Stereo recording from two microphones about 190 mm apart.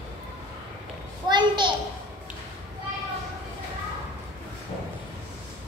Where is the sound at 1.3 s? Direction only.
25° right (ahead or behind).